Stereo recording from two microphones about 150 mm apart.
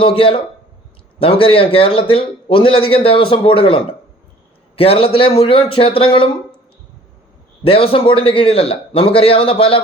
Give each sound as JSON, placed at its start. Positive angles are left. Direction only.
{"t": 0.0, "sound": "speech", "side_deg": 35}
{"t": 7.6, "sound": "speech", "side_deg": 40}